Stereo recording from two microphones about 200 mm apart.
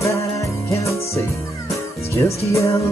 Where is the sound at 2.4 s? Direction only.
15° left (ahead or behind).